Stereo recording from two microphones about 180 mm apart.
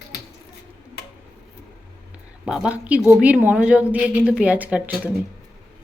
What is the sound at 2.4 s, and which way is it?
A woman's voice, 5° right (ahead or behind).